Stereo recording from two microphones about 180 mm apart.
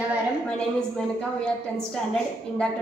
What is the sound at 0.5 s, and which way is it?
A woman's voice, 5° left (ahead or behind).